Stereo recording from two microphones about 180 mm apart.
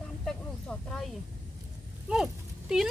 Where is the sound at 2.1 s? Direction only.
5° right (ahead or behind).